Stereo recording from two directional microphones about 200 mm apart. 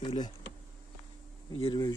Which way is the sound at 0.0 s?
25° left (ahead or behind).